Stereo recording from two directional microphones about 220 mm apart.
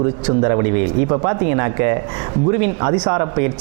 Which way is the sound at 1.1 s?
25° right (ahead or behind).